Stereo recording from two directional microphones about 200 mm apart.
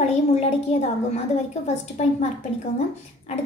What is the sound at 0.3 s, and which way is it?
A woman's voice, 30° left (ahead or behind).